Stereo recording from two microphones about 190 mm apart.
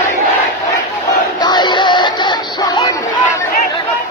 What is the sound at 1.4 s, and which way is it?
Music, 25° left (ahead or behind).